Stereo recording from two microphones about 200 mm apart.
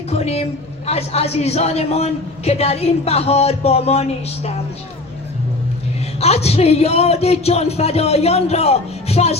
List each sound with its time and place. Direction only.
0.1 s a woman's voice: 30° left (ahead or behind)
6.1 s speech: 30° left (ahead or behind)